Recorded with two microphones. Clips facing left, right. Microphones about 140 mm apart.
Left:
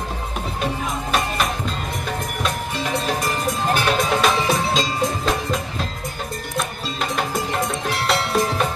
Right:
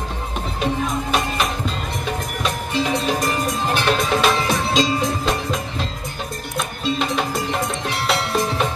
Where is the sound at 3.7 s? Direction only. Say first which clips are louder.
Right 2 dB; centre (ahead or behind).